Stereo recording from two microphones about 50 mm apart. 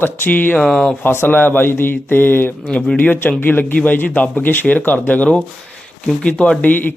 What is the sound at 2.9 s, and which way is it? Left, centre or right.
Speech, left.